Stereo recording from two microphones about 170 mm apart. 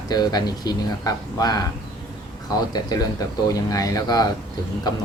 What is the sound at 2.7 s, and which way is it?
Speech, 20° left (ahead or behind).